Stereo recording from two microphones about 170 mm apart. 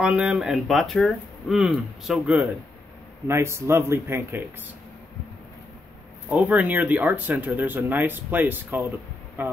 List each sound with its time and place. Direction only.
0.0 s speech: 5° right (ahead or behind)
6.2 s speech: 5° right (ahead or behind)